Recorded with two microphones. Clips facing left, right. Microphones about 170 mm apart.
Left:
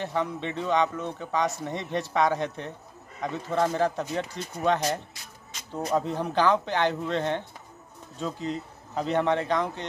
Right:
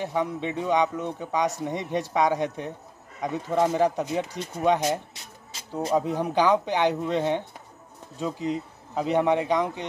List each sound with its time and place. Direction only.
0.0 s a man's voice: 10° right (ahead or behind)
5.5 s music: 25° right (ahead or behind)
5.9 s a man's voice: 10° right (ahead or behind)